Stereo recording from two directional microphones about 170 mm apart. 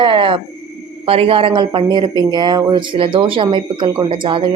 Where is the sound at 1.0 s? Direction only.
35° right (ahead or behind).